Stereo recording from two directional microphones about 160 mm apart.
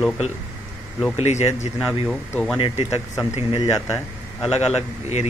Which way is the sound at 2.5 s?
35° left (ahead or behind).